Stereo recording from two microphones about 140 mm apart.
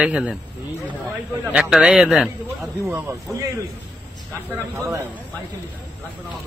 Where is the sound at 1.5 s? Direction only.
5° right (ahead or behind).